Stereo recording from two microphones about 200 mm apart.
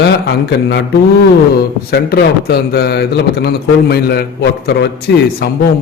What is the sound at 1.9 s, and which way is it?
Speech, 50° left (ahead or behind).